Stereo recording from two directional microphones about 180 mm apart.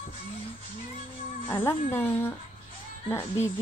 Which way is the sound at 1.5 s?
10° left (ahead or behind).